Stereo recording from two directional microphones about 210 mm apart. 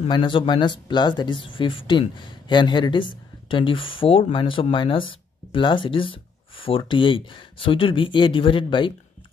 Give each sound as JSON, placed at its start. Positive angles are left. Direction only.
{"t": 0.1, "sound": "speech", "side_deg": 25}